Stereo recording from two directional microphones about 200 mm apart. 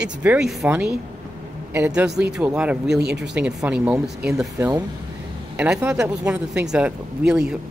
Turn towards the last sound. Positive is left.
turn(degrees=-5)  # may be behind; listen again after turning